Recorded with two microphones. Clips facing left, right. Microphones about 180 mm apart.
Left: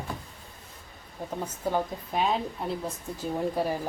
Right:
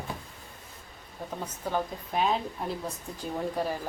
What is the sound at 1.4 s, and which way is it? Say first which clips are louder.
Speech: left 3 dB; 10° left (ahead or behind).